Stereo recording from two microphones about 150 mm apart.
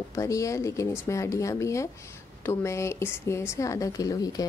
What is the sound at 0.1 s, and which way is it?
A woman's voice, 20° left (ahead or behind).